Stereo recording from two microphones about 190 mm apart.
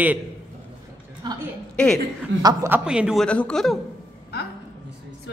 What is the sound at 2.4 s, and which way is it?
A woman's voice, 10° right (ahead or behind).